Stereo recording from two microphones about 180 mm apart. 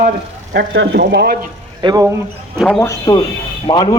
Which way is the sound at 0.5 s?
80° right.